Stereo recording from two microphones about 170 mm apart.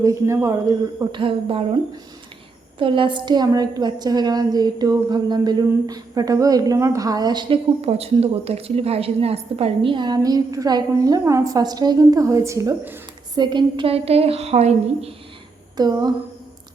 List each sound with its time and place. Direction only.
0.0 s speech: 20° right (ahead or behind)
1.1 s a woman's voice: 30° right (ahead or behind)
2.7 s a woman's voice: 30° right (ahead or behind); by 13.0 s 15° right (ahead or behind)
13.3 s a woman's voice: 25° right (ahead or behind)
15.8 s a woman's voice: 25° right (ahead or behind)